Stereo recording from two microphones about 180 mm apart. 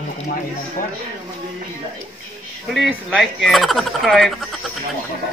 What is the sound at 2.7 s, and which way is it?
Speech, centre (ahead or behind).